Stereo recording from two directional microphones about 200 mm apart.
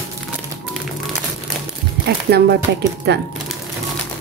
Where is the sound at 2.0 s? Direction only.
55° right (ahead or behind).